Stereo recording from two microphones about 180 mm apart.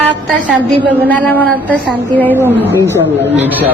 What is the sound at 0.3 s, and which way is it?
Speech, 5° left (ahead or behind).